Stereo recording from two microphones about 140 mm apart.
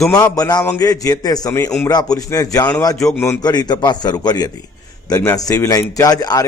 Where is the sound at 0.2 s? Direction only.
25° left (ahead or behind).